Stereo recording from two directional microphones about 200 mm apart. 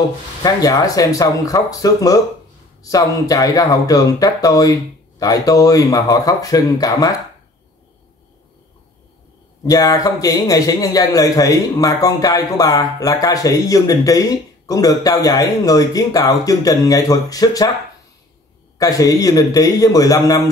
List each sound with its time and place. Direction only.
0.4 s a man's voice: 20° left (ahead or behind)
9.6 s a man's voice: 20° left (ahead or behind)
18.8 s a man's voice: 15° left (ahead or behind)